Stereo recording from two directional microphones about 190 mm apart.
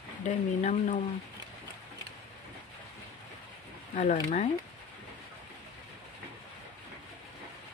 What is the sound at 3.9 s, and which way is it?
Speech, 40° left (ahead or behind).